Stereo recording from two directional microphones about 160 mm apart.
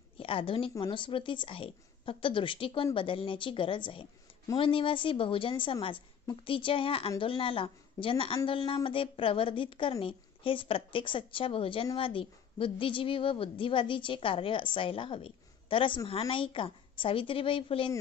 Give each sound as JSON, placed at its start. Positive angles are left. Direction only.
{"t": 0.2, "sound": "a woman's voice", "side_deg": 35}